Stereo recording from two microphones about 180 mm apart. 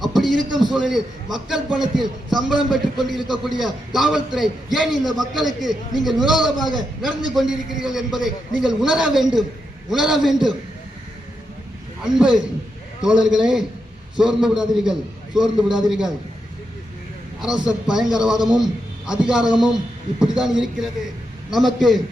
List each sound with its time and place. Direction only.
0.0 s a sound: centre (ahead or behind)
0.6 s a man's voice: centre (ahead or behind)
12.0 s a man's voice: 5° right (ahead or behind)
17.7 s a man's voice: 5° right (ahead or behind)